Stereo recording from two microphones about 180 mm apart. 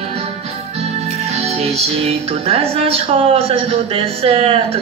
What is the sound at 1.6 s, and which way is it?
Speech, 35° right (ahead or behind).